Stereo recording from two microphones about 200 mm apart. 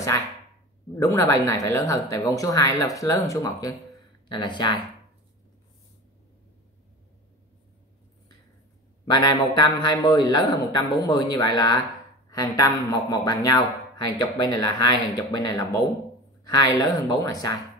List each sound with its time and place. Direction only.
0.9 s speech: 15° left (ahead or behind)
9.0 s speech: 20° left (ahead or behind)